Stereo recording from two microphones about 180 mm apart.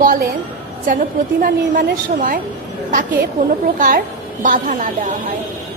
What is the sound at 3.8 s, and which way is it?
A child's voice, 50° right (ahead or behind).